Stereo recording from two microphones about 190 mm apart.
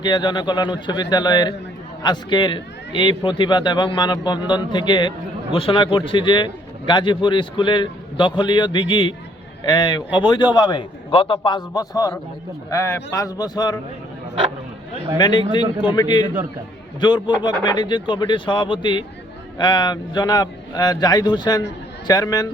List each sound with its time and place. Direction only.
0.0 s a man's voice: 25° left (ahead or behind)
15.2 s a man's voice: 20° left (ahead or behind)